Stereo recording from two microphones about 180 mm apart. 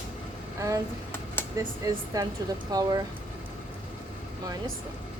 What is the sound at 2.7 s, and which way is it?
Speech, 20° right (ahead or behind).